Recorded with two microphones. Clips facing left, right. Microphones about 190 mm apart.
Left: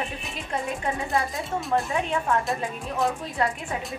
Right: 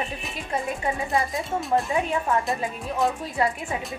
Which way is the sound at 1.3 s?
Centre (ahead or behind).